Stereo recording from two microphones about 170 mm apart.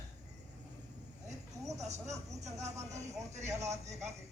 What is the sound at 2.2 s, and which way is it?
Vehicle, 20° right (ahead or behind).